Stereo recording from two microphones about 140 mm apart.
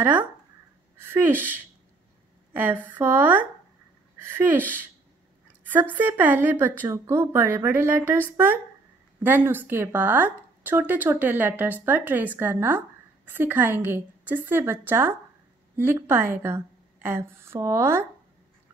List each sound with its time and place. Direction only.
0.0 s a woman's voice: 10° right (ahead or behind)